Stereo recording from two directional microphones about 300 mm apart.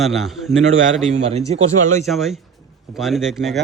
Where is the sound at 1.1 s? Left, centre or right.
Right.